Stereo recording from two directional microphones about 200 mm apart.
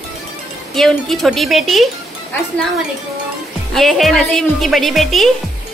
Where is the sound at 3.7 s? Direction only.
Centre (ahead or behind).